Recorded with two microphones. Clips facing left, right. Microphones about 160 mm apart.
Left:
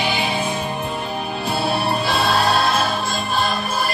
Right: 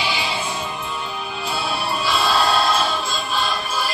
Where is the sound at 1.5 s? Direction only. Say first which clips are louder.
Left 4 dB; 55° left (ahead or behind).